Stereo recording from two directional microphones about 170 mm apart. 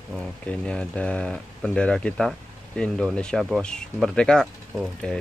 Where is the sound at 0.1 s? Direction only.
5° left (ahead or behind).